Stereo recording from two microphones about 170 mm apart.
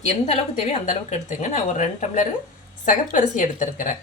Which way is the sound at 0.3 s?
40° left (ahead or behind).